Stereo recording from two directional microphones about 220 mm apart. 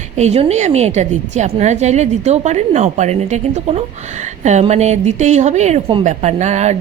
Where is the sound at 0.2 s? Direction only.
30° right (ahead or behind).